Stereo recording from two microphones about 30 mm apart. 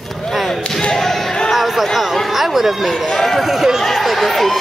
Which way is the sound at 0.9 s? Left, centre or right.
Centre.